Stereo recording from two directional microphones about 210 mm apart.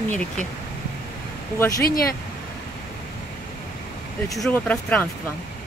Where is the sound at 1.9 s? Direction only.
45° left (ahead or behind).